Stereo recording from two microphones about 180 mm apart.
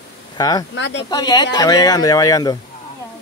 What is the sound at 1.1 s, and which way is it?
Speech, 25° left (ahead or behind).